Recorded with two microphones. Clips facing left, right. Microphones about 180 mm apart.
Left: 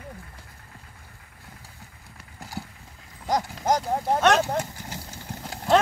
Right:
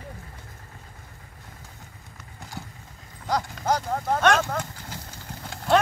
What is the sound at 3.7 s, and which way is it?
Speech, 15° left (ahead or behind).